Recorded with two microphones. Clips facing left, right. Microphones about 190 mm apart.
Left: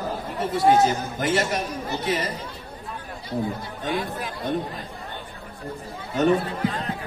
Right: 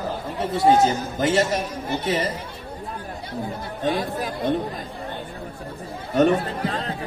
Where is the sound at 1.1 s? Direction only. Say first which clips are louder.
Right 3 dB; 25° right (ahead or behind).